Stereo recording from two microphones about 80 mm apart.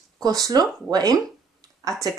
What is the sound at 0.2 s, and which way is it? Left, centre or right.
Speech, right.